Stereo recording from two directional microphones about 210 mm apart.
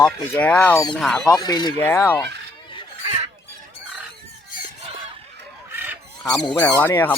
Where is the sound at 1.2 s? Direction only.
20° left (ahead or behind).